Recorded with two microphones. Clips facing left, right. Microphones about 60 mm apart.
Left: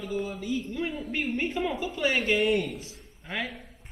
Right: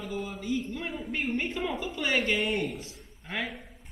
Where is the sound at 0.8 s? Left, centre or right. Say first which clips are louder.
Left 4 dB; centre.